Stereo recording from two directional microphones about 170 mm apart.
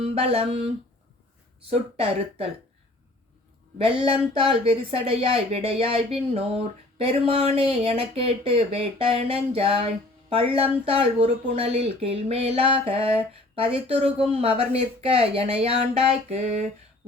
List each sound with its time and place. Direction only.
0.0 s speech: 35° right (ahead or behind)
1.7 s speech: 35° right (ahead or behind)
3.8 s speech: 30° right (ahead or behind)